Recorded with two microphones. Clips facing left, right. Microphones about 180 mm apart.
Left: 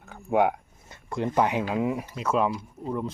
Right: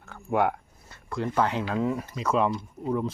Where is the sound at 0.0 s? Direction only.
15° left (ahead or behind).